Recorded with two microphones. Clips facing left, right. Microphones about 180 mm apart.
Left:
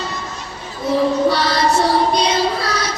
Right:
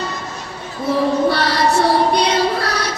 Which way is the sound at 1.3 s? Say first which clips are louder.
Even; 60° right (ahead or behind).